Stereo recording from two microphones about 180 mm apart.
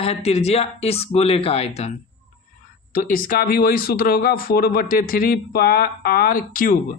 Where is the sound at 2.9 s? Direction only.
50° left (ahead or behind).